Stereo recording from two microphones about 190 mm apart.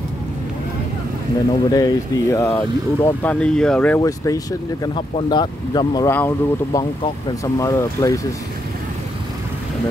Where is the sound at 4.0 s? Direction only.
15° left (ahead or behind).